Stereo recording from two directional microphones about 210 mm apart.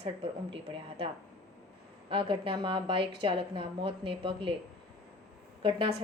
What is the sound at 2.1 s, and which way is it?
Speech, 25° right (ahead or behind).